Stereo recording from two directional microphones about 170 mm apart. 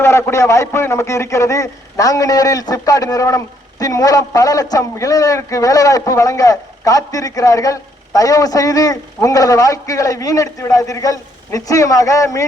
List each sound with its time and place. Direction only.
0.0 s a man's voice: 15° left (ahead or behind)